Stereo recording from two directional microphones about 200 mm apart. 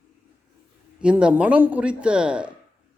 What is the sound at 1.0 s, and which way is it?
A man's voice, 5° right (ahead or behind).